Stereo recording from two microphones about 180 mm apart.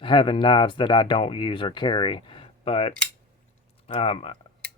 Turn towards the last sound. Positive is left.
turn(degrees=30)  # may be behind; listen again after turning